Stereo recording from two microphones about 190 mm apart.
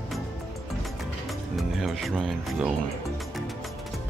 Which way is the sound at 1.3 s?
Centre (ahead or behind).